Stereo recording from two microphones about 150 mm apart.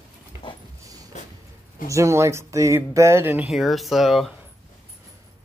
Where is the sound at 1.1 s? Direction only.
50° left (ahead or behind).